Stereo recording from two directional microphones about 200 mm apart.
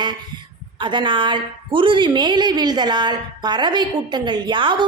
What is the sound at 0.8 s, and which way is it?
A woman's voice, 25° right (ahead or behind).